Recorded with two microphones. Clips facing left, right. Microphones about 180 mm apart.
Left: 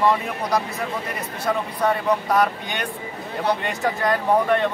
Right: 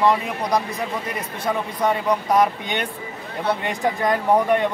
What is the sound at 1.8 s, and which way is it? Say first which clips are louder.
Speech: even; 20° right (ahead or behind).